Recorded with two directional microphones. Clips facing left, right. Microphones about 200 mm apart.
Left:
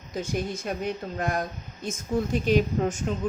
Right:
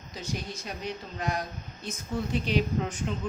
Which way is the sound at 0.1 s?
50° left (ahead or behind).